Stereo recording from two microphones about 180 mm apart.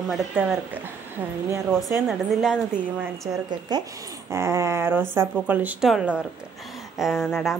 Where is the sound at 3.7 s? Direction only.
25° right (ahead or behind).